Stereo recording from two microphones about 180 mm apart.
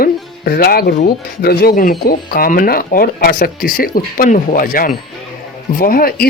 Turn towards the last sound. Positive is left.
turn(degrees=55)  # may be behind; listen again after turning